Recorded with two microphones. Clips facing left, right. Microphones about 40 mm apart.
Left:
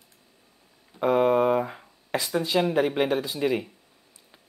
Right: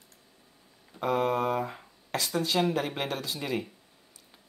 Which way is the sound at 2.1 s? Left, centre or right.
Centre.